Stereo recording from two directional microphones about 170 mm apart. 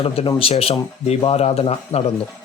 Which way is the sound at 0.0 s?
35° left (ahead or behind).